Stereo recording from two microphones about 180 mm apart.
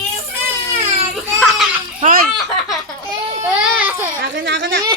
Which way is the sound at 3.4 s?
10° right (ahead or behind).